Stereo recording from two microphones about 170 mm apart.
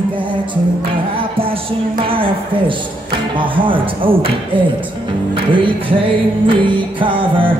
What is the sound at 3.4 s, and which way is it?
Music, 30° right (ahead or behind).